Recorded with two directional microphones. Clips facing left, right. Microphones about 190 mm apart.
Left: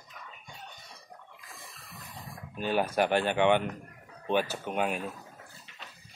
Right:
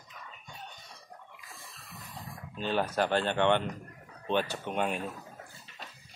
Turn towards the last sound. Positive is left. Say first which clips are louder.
# left 1 dB
turn(degrees=5)  # may be behind; listen again after turning